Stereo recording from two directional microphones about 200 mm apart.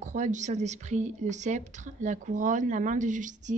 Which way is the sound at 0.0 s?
40° right (ahead or behind).